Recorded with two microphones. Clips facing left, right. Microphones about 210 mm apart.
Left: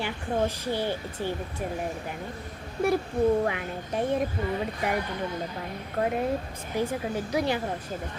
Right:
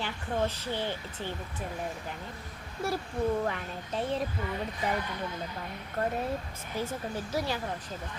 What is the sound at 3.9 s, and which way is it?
Speech, 15° left (ahead or behind).